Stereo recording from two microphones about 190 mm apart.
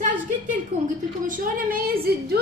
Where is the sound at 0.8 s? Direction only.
45° right (ahead or behind).